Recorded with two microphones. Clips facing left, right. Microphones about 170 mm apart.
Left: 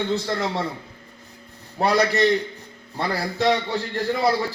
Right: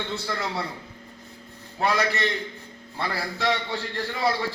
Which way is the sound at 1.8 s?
40° left (ahead or behind).